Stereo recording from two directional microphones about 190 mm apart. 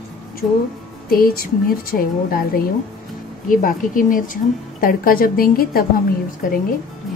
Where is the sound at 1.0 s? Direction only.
50° left (ahead or behind).